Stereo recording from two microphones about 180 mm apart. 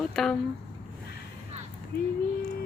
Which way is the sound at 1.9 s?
55° left (ahead or behind).